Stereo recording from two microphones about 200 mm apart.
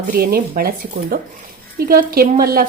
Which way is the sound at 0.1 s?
50° right (ahead or behind).